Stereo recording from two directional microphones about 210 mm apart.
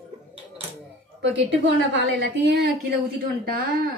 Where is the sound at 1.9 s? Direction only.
55° right (ahead or behind).